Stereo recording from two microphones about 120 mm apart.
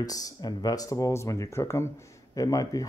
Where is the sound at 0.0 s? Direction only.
30° left (ahead or behind).